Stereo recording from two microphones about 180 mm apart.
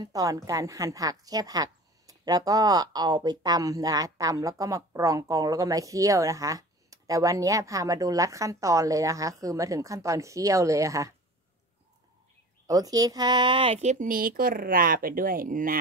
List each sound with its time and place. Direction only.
0.0 s a woman's voice: 20° right (ahead or behind)
12.6 s speech: 20° right (ahead or behind); by 15.8 s 50° right (ahead or behind)